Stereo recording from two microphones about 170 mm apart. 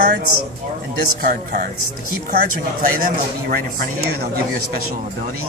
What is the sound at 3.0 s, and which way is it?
A man's voice, 55° right (ahead or behind).